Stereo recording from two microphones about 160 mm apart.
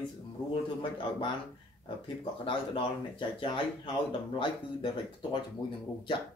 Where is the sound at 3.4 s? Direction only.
35° left (ahead or behind).